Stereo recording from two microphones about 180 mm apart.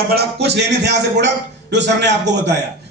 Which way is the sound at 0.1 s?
60° right (ahead or behind).